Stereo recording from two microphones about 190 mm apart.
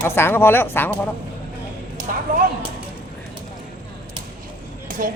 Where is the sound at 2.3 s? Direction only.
45° right (ahead or behind).